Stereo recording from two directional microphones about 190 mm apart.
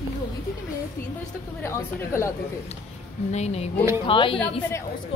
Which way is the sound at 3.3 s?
35° left (ahead or behind).